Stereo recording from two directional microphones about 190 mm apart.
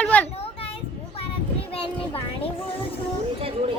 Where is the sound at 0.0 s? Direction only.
5° left (ahead or behind).